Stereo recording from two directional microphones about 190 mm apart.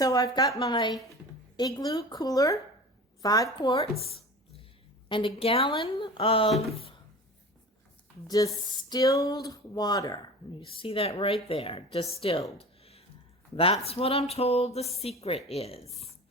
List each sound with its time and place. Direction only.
0.0 s speech: 20° left (ahead or behind)
5.0 s speech: 25° left (ahead or behind)
8.7 s speech: 20° left (ahead or behind)
12.2 s a sound: 30° left (ahead or behind)
13.6 s speech: 30° left (ahead or behind)